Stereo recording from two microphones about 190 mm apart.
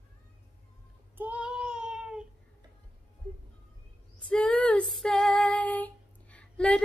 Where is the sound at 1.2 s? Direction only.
5° right (ahead or behind).